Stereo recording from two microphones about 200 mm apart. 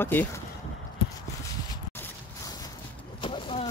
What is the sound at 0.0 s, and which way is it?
Speech, 10° left (ahead or behind).